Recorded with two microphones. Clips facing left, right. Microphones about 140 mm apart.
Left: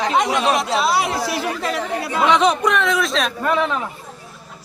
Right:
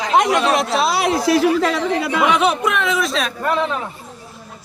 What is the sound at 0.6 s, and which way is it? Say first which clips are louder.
Speech: right 1 dB; 90° right.